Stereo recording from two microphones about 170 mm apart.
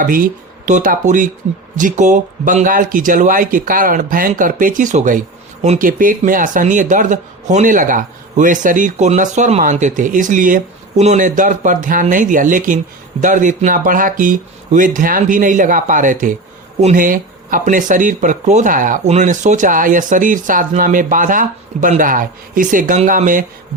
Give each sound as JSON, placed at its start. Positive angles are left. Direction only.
{"t": 0.0, "sound": "speech", "side_deg": -55}